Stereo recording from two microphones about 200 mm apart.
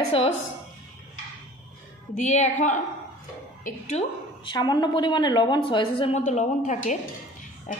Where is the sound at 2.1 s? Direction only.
35° left (ahead or behind).